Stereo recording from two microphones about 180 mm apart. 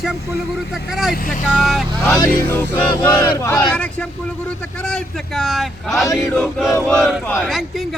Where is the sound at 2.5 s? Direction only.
10° left (ahead or behind).